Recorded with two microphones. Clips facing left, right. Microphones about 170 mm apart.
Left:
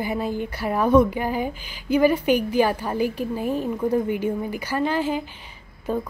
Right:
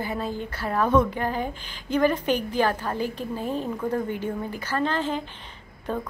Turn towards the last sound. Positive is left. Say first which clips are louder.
# left 4 dB
turn(degrees=5)  # may be behind; listen again after turning